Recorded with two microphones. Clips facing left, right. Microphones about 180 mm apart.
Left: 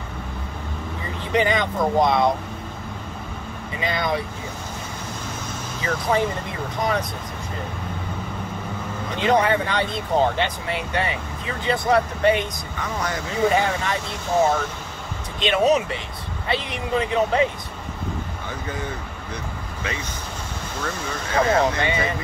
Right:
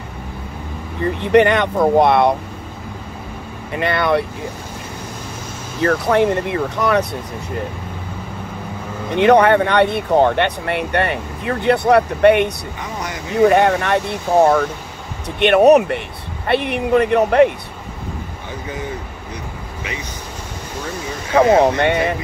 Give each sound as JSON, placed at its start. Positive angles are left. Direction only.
{"t": 1.0, "sound": "speech", "side_deg": -65}
{"t": 3.7, "sound": "speech", "side_deg": -65}
{"t": 5.8, "sound": "speech", "side_deg": -65}
{"t": 9.1, "sound": "speech", "side_deg": -65}
{"t": 21.4, "sound": "speech", "side_deg": -65}